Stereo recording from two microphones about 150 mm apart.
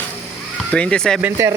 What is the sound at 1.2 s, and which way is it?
Speech, 15° right (ahead or behind).